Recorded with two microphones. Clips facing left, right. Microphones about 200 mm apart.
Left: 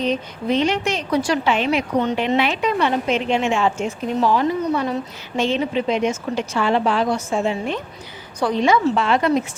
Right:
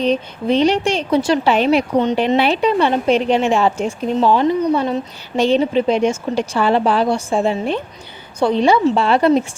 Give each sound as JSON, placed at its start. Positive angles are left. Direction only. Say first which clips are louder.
{"t": 0.0, "sound": "speech", "louder": "right 4 dB", "side_deg": -30}
{"t": 4.2, "sound": "a woman's voice", "louder": "right 4 dB", "side_deg": -25}